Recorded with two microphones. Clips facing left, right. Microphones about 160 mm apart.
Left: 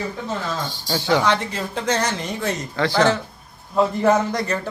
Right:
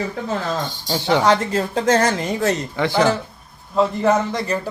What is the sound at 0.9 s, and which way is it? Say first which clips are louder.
Speech: right 1 dB; 20° right (ahead or behind).